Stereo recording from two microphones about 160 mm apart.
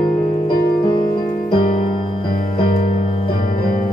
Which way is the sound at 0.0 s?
30° left (ahead or behind).